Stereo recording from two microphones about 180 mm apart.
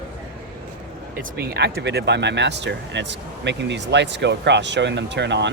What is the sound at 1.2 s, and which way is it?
Speech, 65° right (ahead or behind).